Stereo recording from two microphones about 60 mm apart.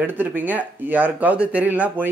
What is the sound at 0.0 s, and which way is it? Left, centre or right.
Speech, right.